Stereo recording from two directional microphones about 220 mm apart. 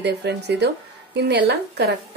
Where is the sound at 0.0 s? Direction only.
50° right (ahead or behind).